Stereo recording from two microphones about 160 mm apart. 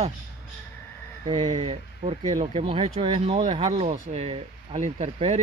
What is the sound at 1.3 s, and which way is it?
Speech, 40° right (ahead or behind).